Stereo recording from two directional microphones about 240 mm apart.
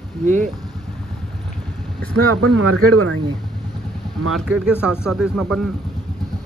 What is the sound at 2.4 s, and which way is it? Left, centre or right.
Speech, right.